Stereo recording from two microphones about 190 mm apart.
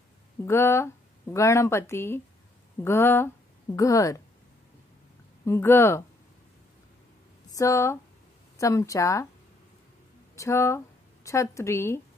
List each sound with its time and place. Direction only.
0.5 s speech: 15° left (ahead or behind)
5.4 s speech: 15° left (ahead or behind)
7.5 s speech: 15° left (ahead or behind)
10.3 s speech: 15° left (ahead or behind)